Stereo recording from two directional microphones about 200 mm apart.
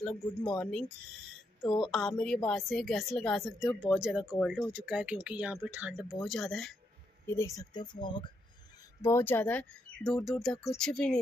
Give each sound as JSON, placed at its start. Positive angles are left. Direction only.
{"t": 0.4, "sound": "a woman's voice", "side_deg": 5}
{"t": 7.2, "sound": "speech", "side_deg": 15}
{"t": 9.0, "sound": "a woman's voice", "side_deg": 10}